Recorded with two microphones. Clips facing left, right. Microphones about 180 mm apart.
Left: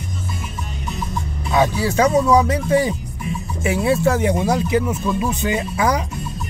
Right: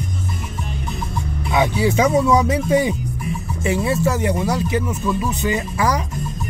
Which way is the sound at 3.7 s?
15° left (ahead or behind).